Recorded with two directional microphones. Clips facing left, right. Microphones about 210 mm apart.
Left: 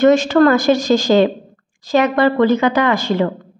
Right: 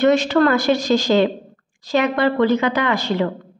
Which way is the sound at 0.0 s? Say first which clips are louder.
Left 4 dB; 45° left (ahead or behind).